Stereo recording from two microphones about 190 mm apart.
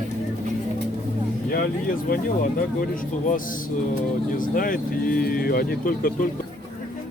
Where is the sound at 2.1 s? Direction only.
45° left (ahead or behind).